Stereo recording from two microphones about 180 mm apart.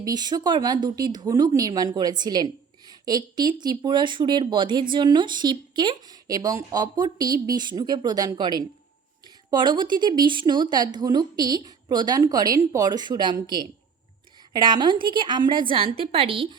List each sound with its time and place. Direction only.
0.0 s speech: 20° right (ahead or behind)